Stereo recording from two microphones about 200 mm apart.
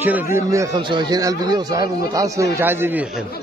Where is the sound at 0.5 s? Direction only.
20° right (ahead or behind).